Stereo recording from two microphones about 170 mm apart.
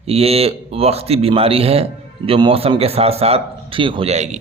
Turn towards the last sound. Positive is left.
turn(degrees=-40)  # may be behind; listen again after turning